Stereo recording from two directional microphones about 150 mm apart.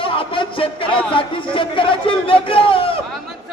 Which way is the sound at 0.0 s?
35° left (ahead or behind).